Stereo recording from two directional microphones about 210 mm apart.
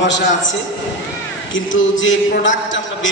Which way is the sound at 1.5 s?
65° left (ahead or behind).